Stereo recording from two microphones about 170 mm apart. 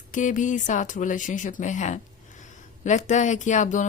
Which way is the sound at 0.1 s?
50° left (ahead or behind).